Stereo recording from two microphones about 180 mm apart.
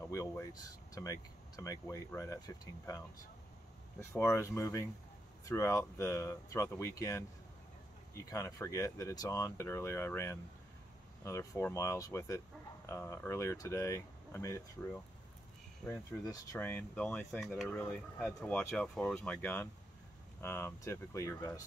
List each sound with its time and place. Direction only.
0.0 s speech: 15° left (ahead or behind)
4.1 s speech: 15° left (ahead or behind)